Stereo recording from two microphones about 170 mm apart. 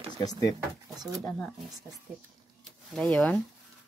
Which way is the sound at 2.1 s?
5° right (ahead or behind).